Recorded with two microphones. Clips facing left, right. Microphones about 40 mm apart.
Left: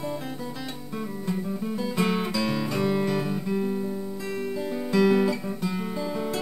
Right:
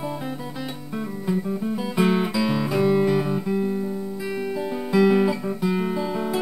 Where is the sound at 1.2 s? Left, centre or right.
Centre.